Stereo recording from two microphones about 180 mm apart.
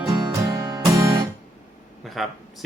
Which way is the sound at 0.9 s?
15° right (ahead or behind).